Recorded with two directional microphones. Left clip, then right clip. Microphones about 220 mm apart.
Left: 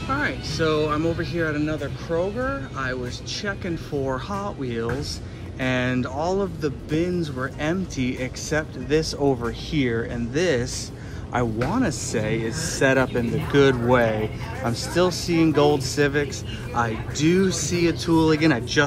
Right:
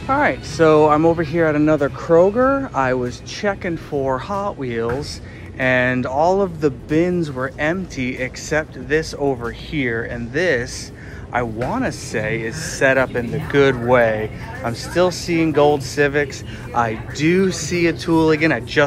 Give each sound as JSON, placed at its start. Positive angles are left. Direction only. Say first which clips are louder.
{"t": 0.0, "sound": "speech", "louder": "right 8 dB", "side_deg": 0}
{"t": 1.8, "sound": "speech", "louder": "right 12 dB", "side_deg": -90}
{"t": 2.8, "sound": "speech", "louder": "right 9 dB", "side_deg": -5}